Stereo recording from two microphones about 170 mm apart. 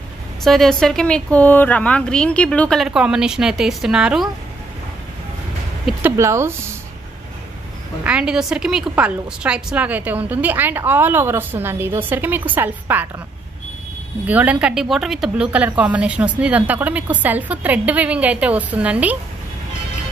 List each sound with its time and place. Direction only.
0.4 s speech: centre (ahead or behind)
6.1 s a woman's voice: 15° right (ahead or behind)
8.0 s a woman's voice: 5° right (ahead or behind)
14.2 s a woman's voice: 10° right (ahead or behind)